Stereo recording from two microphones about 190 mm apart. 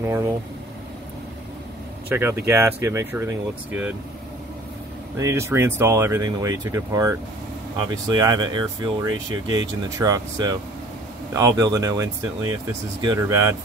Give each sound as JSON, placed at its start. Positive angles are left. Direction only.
{"t": 0.0, "sound": "speech", "side_deg": -15}
{"t": 2.1, "sound": "speech", "side_deg": -10}
{"t": 5.2, "sound": "speech", "side_deg": -15}